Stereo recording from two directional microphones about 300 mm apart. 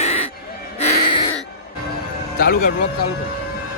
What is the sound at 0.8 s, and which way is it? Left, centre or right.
Music, left.